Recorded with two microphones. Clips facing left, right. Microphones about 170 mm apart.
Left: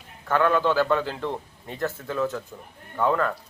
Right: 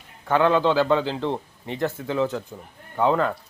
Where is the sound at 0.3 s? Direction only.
20° right (ahead or behind).